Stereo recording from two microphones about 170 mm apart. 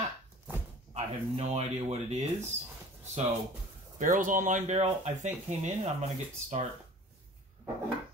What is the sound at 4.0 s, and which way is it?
Speech, 50° right (ahead or behind).